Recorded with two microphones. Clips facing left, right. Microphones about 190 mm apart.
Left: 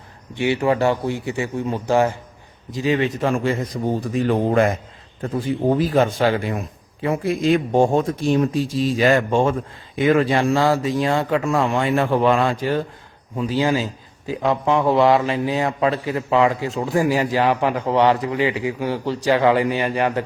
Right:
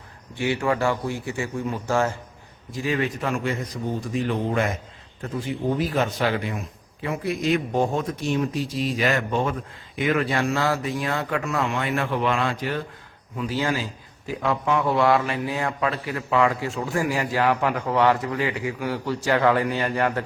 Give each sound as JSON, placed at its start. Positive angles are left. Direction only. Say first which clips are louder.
{"t": 0.3, "sound": "a man's voice", "louder": "left 5 dB", "side_deg": 20}
{"t": 4.1, "sound": "speech", "louder": "left 6 dB", "side_deg": 45}
{"t": 5.7, "sound": "a man's voice", "louder": "left 6 dB", "side_deg": 30}